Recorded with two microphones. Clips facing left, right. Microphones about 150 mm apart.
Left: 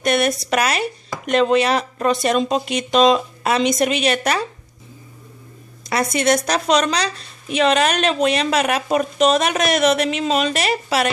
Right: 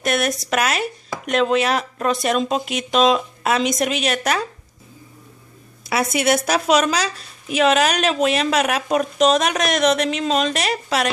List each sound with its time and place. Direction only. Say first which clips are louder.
0.0 s a woman's voice: left 3 dB; centre (ahead or behind)
6.1 s a woman's voice: left 1 dB; 5° right (ahead or behind)